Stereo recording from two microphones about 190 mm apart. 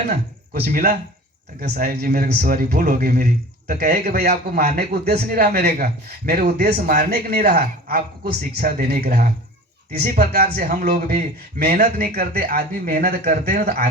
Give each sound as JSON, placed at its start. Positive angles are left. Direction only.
{"t": 0.5, "sound": "a man's voice", "side_deg": -55}